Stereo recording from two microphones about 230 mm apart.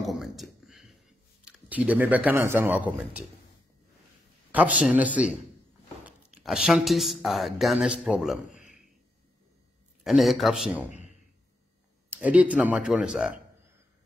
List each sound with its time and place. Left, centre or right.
0.0 s a sound: centre
1.4 s speech: centre
4.5 s a man's voice: centre
8.5 s a sound: left
10.0 s speech: centre
12.1 s speech: centre